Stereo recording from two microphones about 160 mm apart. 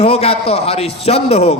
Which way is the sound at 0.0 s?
40° left (ahead or behind).